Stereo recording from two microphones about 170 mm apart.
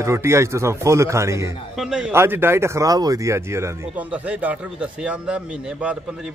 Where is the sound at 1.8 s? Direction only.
5° right (ahead or behind).